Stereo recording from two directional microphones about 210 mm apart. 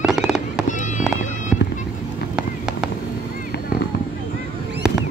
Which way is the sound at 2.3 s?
5° right (ahead or behind).